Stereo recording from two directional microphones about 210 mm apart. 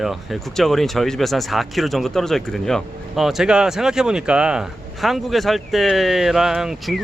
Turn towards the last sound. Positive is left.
turn(degrees=0)  # may be behind; listen again after turning